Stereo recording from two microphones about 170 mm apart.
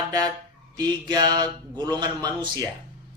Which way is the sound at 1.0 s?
25° right (ahead or behind).